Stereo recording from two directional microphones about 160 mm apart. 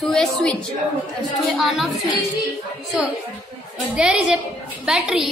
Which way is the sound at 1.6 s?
Centre (ahead or behind).